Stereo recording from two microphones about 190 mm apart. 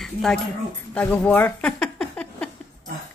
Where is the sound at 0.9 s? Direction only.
5° left (ahead or behind).